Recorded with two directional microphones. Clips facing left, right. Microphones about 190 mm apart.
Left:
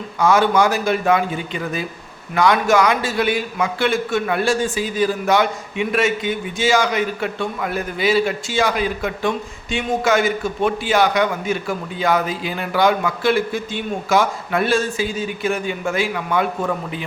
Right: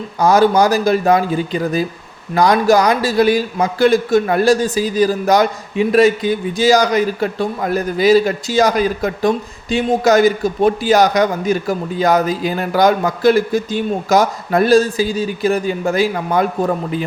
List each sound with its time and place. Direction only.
0.2 s a man's voice: 35° right (ahead or behind)